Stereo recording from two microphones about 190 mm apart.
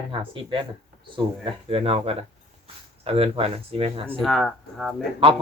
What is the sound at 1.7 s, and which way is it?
Speech, 30° right (ahead or behind).